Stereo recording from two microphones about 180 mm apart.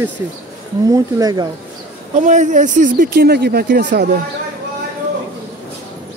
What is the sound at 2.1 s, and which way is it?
Speech, 40° right (ahead or behind).